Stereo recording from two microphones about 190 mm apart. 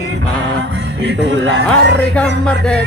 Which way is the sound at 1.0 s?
70° right (ahead or behind).